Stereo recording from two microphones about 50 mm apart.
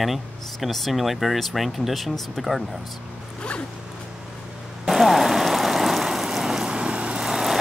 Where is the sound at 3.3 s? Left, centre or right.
Left.